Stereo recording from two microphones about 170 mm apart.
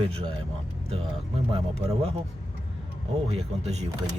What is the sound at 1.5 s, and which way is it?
Speech, 35° right (ahead or behind).